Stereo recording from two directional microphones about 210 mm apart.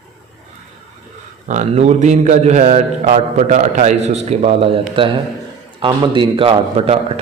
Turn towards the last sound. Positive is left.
turn(degrees=-25)  # may be behind; listen again after turning